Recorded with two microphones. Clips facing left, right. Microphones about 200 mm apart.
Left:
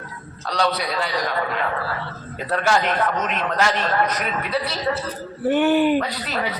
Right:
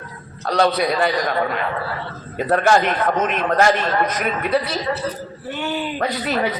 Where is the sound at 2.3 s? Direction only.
55° right (ahead or behind).